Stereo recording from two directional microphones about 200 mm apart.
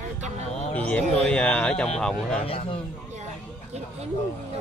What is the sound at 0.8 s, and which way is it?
Speech, 5° left (ahead or behind).